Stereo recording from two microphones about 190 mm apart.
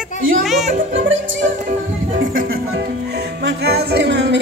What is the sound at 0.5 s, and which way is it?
Music, centre (ahead or behind).